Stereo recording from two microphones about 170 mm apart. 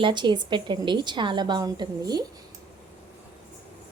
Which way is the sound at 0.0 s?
25° right (ahead or behind).